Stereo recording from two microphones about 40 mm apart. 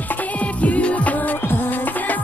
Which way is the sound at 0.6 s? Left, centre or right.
Left.